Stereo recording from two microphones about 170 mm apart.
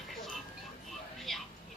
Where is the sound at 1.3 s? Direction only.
Centre (ahead or behind).